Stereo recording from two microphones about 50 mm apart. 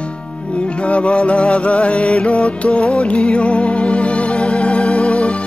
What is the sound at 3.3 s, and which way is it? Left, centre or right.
Music, left.